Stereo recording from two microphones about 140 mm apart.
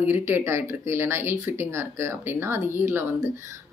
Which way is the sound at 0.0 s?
15° right (ahead or behind).